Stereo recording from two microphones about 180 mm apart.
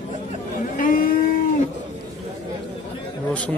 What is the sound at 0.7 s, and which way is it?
Vehicle, 50° left (ahead or behind).